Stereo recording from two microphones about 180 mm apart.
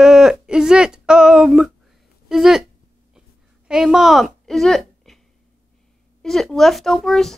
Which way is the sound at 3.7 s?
5° right (ahead or behind).